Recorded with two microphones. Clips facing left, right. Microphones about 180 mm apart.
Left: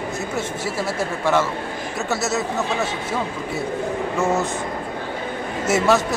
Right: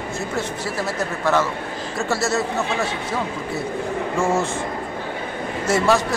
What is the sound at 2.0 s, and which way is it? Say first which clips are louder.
Speech: right 2 dB; 20° left (ahead or behind).